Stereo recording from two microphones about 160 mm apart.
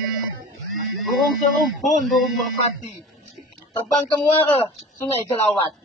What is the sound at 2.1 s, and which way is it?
Speech, centre (ahead or behind).